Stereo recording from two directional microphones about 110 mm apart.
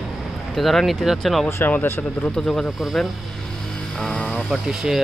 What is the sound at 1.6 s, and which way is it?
Speech, 15° left (ahead or behind).